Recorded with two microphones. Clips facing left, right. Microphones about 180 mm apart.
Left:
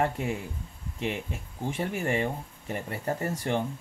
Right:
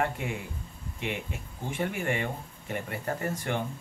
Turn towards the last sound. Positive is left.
turn(degrees=35)  # may be behind; listen again after turning